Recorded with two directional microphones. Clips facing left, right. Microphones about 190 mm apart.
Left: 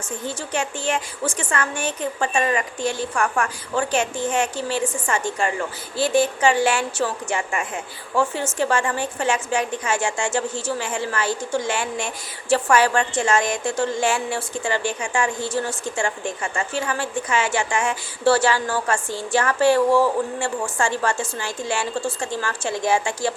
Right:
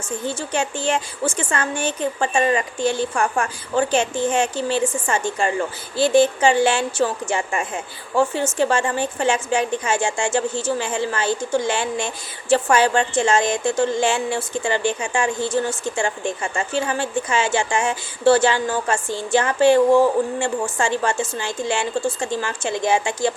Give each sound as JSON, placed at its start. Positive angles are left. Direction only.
{"t": 0.3, "sound": "a woman's voice", "side_deg": -30}